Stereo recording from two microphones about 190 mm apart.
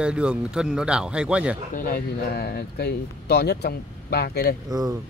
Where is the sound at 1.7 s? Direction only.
45° left (ahead or behind).